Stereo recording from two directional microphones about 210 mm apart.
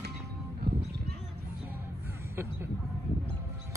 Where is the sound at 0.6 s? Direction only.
50° right (ahead or behind).